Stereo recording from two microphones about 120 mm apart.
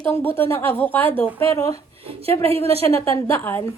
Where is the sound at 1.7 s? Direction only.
55° right (ahead or behind).